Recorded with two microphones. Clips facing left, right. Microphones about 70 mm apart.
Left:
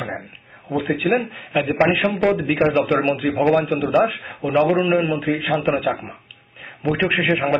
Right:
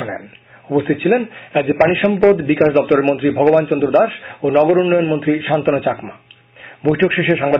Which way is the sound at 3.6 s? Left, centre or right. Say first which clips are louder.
Right 6 dB; right.